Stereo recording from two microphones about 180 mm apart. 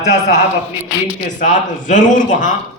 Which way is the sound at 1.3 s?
45° left (ahead or behind).